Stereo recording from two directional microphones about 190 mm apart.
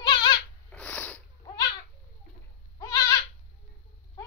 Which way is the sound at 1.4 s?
20° left (ahead or behind).